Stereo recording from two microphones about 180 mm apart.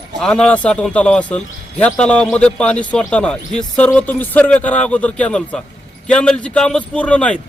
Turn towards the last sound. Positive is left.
turn(degrees=5)  # may be behind; listen again after turning